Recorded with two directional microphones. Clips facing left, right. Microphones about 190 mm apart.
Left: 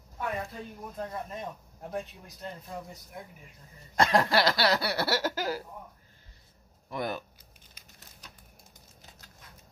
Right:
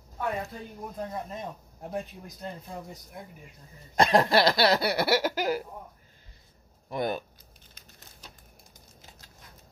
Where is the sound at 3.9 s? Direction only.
15° right (ahead or behind).